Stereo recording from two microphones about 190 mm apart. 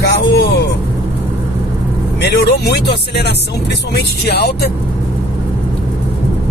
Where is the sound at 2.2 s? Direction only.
60° left (ahead or behind).